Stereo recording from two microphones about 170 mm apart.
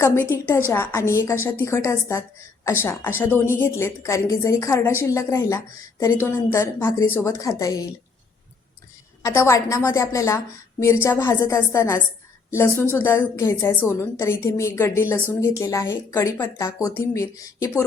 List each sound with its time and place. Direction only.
0.0 s a woman's voice: 15° left (ahead or behind)
9.2 s a woman's voice: 15° left (ahead or behind)